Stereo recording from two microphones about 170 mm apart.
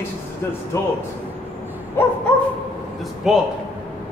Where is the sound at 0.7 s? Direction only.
15° left (ahead or behind).